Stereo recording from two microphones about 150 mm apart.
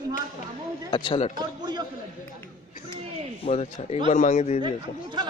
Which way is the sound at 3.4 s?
45° left (ahead or behind).